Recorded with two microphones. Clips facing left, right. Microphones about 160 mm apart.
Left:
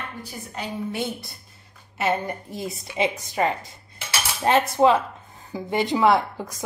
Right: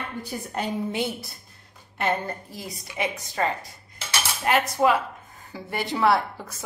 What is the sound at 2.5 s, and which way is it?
A woman's voice, 25° left (ahead or behind).